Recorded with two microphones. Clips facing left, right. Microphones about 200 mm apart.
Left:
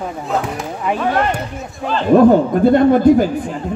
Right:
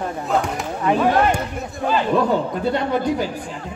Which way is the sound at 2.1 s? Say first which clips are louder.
Left 14 dB; 50° left (ahead or behind).